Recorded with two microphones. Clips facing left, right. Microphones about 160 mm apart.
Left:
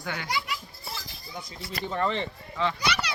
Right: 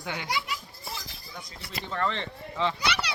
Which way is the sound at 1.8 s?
10° left (ahead or behind).